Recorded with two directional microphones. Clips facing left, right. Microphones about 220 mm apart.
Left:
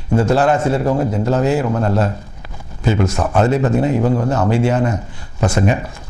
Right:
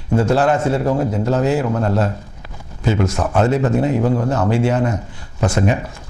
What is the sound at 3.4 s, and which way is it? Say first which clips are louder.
A man's voice: left 1 dB; 15° left (ahead or behind).